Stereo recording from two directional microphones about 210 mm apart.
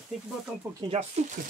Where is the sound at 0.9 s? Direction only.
30° right (ahead or behind).